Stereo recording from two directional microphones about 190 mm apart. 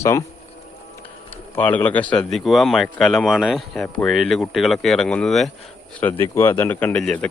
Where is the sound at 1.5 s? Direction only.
10° left (ahead or behind).